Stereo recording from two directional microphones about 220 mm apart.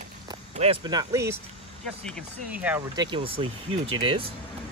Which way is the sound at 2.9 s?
20° right (ahead or behind).